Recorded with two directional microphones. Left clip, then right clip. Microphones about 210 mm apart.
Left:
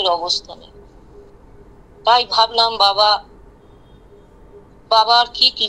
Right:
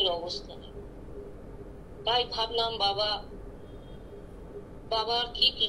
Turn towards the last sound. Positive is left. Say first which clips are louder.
# left 11 dB
turn(degrees=50)  # may be behind; listen again after turning